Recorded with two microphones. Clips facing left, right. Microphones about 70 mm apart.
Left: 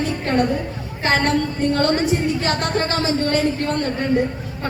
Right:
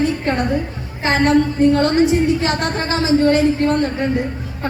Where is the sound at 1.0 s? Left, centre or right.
Centre.